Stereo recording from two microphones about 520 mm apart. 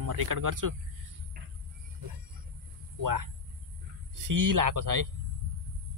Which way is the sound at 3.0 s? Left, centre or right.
Right.